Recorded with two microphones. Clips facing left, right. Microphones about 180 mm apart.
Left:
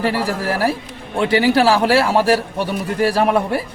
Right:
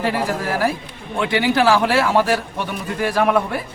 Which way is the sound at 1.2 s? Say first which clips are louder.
Left 3 dB; 35° left (ahead or behind).